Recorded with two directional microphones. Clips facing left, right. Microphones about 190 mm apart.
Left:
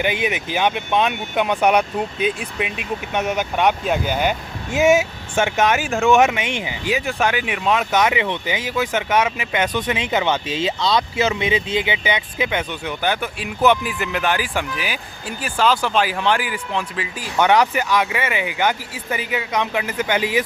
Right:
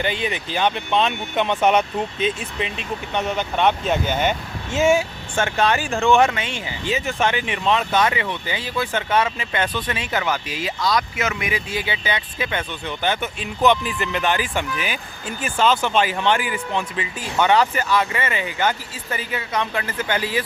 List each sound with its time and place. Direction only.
0.0 s speech: 15° left (ahead or behind)
4.7 s speech: 15° left (ahead or behind)
5.9 s speech: 5° left (ahead or behind)
6.1 s speech: 15° left (ahead or behind)
7.1 s speech: 5° left (ahead or behind)
7.9 s speech: 15° left (ahead or behind)